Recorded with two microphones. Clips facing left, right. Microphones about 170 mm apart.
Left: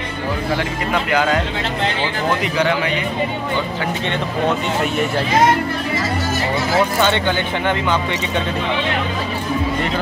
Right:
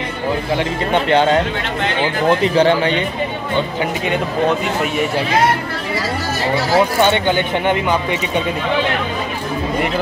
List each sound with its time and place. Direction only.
0.9 s speech: 30° right (ahead or behind)
2.4 s speech: 30° right (ahead or behind)
7.0 s speech: 15° right (ahead or behind)